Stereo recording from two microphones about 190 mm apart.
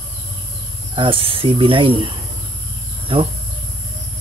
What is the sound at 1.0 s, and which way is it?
Speech, 30° right (ahead or behind).